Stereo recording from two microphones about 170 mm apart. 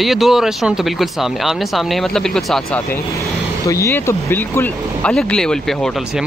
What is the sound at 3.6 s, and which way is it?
Speech, 15° left (ahead or behind).